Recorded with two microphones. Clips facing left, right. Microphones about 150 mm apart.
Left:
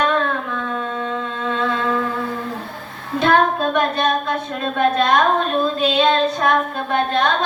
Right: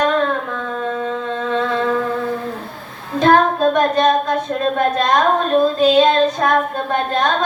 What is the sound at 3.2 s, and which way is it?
Child singing, 40° right (ahead or behind).